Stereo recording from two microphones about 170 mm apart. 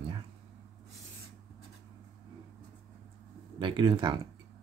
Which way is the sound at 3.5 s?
30° right (ahead or behind).